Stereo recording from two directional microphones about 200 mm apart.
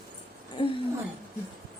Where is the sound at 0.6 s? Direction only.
25° left (ahead or behind).